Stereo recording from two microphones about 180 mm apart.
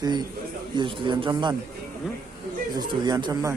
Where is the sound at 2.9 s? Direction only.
25° right (ahead or behind).